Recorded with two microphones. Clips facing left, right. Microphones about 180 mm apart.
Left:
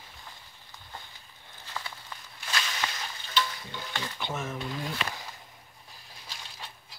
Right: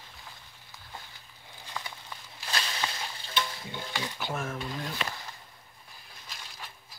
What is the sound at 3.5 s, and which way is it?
Stir, 25° right (ahead or behind).